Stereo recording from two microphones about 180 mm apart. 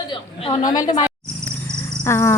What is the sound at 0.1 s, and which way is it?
Speech, 30° left (ahead or behind).